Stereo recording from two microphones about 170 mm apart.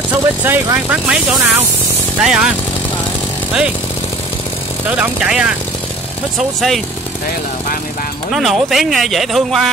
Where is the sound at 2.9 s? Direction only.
25° left (ahead or behind).